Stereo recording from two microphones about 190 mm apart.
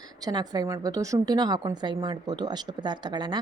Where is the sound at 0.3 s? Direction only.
20° right (ahead or behind).